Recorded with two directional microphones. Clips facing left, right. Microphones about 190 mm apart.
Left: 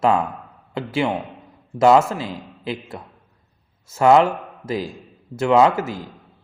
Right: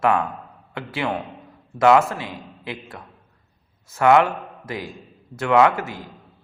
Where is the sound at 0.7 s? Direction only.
25° left (ahead or behind).